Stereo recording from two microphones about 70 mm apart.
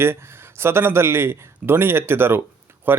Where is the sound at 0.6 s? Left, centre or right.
Right.